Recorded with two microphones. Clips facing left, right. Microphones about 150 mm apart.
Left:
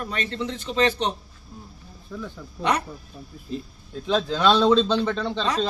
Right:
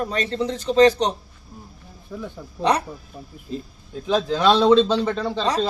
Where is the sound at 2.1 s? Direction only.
20° right (ahead or behind).